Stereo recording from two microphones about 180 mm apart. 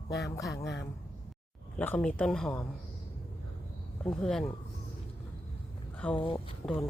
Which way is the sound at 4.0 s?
5° left (ahead or behind).